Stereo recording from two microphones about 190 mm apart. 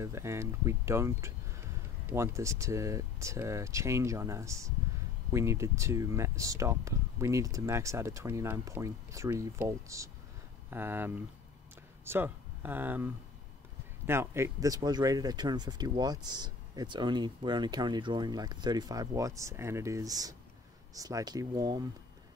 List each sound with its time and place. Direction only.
0.0 s speech: 15° right (ahead or behind)